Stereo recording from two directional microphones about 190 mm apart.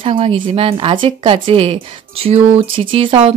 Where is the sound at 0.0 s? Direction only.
30° right (ahead or behind).